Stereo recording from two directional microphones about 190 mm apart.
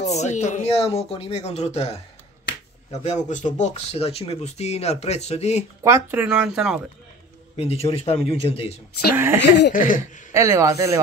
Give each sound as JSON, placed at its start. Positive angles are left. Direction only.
{"t": 0.0, "sound": "speech", "side_deg": 35}
{"t": 3.3, "sound": "speech", "side_deg": 40}
{"t": 5.9, "sound": "speech", "side_deg": -10}
{"t": 7.5, "sound": "speech", "side_deg": 30}
{"t": 9.1, "sound": "speech", "side_deg": -10}
{"t": 9.7, "sound": "a sound", "side_deg": 45}
{"t": 10.3, "sound": "speech", "side_deg": -15}